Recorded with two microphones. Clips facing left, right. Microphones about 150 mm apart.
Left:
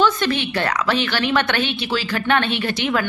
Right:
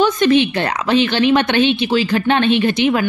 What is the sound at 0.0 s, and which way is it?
A woman's voice, 20° right (ahead or behind).